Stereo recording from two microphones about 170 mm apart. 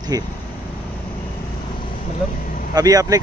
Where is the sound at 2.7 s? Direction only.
20° right (ahead or behind).